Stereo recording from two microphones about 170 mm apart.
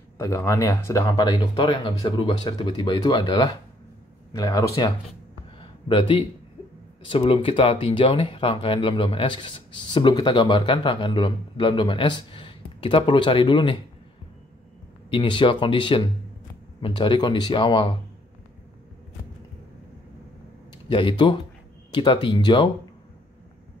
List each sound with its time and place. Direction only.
0.2 s a man's voice: 20° left (ahead or behind)
5.6 s a sound: 30° left (ahead or behind)
7.1 s a man's voice: 30° left (ahead or behind)
15.0 s a man's voice: 30° left (ahead or behind)
20.7 s a man's voice: 30° left (ahead or behind)